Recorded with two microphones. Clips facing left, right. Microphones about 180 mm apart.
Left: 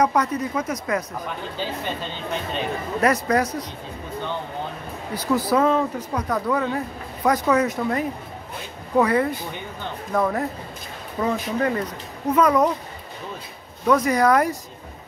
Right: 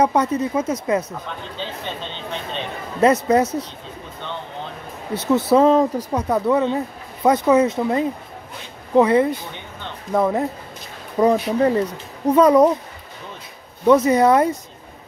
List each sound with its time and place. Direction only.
0.0 s speech: 25° right (ahead or behind)
1.2 s speech: 10° left (ahead or behind)
3.0 s speech: 25° right (ahead or behind)
5.1 s speech: 25° right (ahead or behind)
11.1 s speech: 35° right (ahead or behind)
13.8 s speech: 25° right (ahead or behind)